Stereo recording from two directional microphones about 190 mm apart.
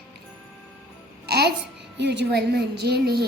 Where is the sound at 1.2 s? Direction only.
60° right (ahead or behind).